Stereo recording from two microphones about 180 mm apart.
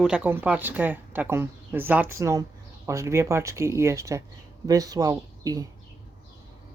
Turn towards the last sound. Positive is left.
turn(degrees=-20)  # may be behind; listen again after turning